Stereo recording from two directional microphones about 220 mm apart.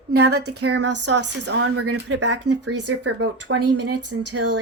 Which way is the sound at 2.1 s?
70° right (ahead or behind).